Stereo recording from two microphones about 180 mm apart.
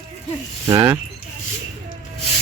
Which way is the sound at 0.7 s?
15° right (ahead or behind).